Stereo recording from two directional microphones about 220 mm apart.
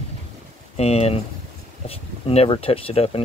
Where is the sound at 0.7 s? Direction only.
30° left (ahead or behind).